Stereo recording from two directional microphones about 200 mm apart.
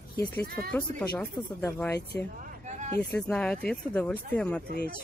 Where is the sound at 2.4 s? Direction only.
35° right (ahead or behind).